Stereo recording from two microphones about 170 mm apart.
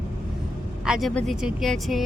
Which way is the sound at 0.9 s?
Centre (ahead or behind).